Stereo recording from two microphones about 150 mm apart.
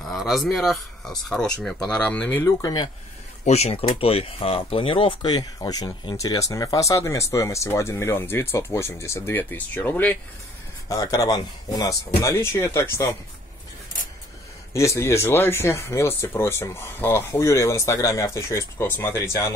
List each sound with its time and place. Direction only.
0.1 s speech: centre (ahead or behind); by 2.9 s 25° left (ahead or behind)
3.4 s speech: 45° left (ahead or behind); by 13.1 s 20° left (ahead or behind)
14.7 s speech: 20° left (ahead or behind)